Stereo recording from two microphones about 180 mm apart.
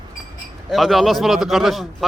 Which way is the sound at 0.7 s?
Centre (ahead or behind).